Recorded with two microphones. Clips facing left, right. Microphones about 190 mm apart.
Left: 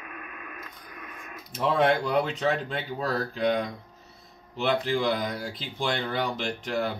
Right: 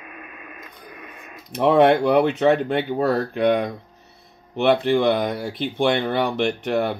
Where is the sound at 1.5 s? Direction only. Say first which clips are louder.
Right 8 dB; 65° right (ahead or behind).